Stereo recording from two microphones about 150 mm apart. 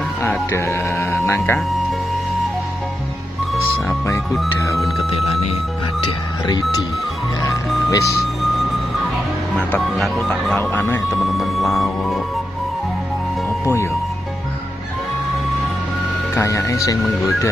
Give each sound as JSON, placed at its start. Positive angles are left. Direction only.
{"t": 0.2, "sound": "speech", "side_deg": 15}
{"t": 5.9, "sound": "speech", "side_deg": 30}
{"t": 7.9, "sound": "speech", "side_deg": 20}
{"t": 9.7, "sound": "speech", "side_deg": 0}
{"t": 10.6, "sound": "speech", "side_deg": 15}
{"t": 11.1, "sound": "speech", "side_deg": 0}
{"t": 16.3, "sound": "speech", "side_deg": 20}